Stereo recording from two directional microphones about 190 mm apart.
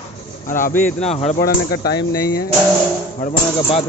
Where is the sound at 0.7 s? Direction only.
10° left (ahead or behind).